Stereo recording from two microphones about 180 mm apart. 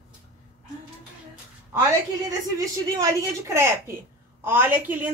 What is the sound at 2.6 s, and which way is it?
Speech, 20° right (ahead or behind).